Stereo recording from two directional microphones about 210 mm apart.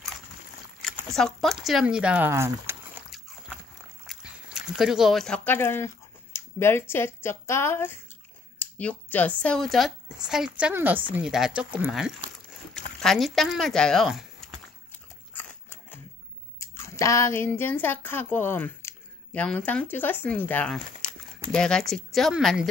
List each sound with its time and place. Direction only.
0.8 s speech: centre (ahead or behind)
4.1 s speech: centre (ahead or behind)
15.3 s dog: 10° left (ahead or behind)
16.5 s speech: 15° left (ahead or behind)